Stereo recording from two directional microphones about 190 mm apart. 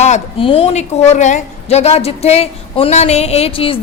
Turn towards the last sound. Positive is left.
turn(degrees=30)  # may be behind; listen again after turning